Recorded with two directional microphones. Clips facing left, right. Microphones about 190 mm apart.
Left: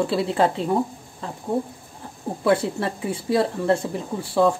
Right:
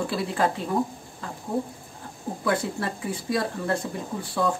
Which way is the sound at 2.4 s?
30° left (ahead or behind).